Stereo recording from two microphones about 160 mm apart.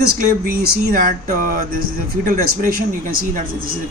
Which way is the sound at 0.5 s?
65° right (ahead or behind).